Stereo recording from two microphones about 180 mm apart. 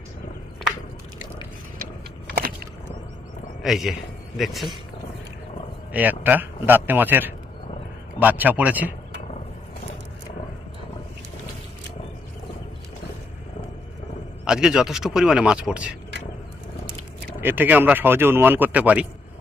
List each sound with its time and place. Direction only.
2.2 s a sound: 60° right (ahead or behind)
3.6 s speech: centre (ahead or behind)
5.9 s speech: 10° right (ahead or behind)
14.4 s speech: 5° right (ahead or behind)
17.4 s speech: 10° right (ahead or behind)